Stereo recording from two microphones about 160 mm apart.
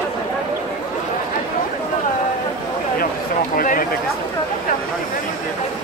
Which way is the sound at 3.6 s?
60° left (ahead or behind).